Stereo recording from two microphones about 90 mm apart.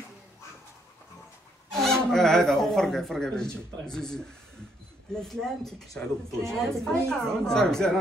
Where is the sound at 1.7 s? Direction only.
5° left (ahead or behind).